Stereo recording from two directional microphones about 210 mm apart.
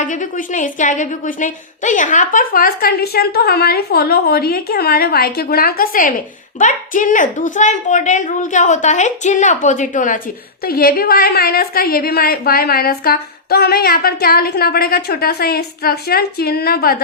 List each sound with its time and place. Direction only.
0.0 s a woman's voice: 40° left (ahead or behind)